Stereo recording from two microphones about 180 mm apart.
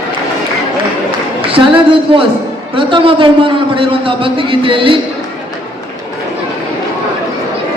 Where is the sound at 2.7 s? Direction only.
30° right (ahead or behind).